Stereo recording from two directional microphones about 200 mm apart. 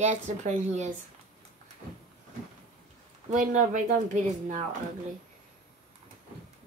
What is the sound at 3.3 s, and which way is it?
Speech, 40° right (ahead or behind).